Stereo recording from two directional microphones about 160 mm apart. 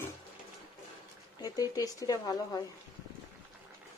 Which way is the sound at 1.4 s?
20° left (ahead or behind).